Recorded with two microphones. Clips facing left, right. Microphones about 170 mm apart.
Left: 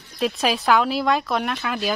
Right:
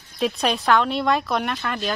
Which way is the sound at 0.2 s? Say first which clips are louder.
Even; centre (ahead or behind).